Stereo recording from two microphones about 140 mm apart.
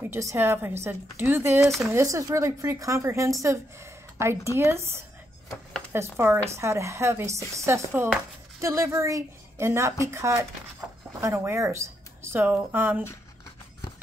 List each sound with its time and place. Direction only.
0.0 s a woman's voice: 20° right (ahead or behind)
1.6 s speech: centre (ahead or behind)
1.9 s a woman's voice: 20° right (ahead or behind)